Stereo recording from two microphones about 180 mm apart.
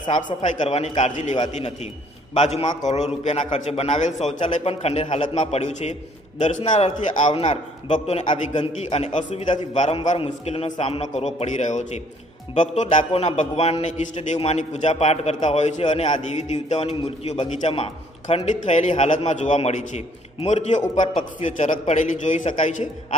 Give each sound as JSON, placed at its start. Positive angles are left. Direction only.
{"t": 0.3, "sound": "a man's voice", "side_deg": 30}